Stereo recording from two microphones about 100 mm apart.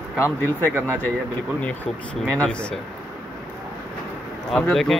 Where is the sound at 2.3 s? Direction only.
10° left (ahead or behind).